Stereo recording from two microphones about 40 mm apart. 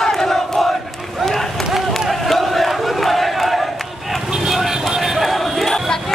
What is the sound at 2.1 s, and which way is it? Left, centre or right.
Battle cry, centre.